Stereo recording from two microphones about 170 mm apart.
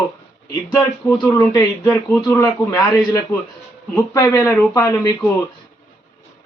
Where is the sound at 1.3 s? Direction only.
15° left (ahead or behind).